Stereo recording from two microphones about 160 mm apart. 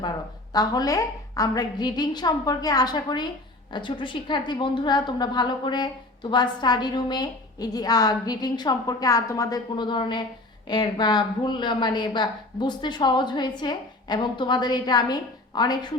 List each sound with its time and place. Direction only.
0.5 s a woman's voice: 25° left (ahead or behind)